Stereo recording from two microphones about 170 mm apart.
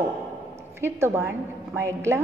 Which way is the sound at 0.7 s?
15° right (ahead or behind).